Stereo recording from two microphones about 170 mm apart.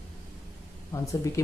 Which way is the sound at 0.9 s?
20° left (ahead or behind).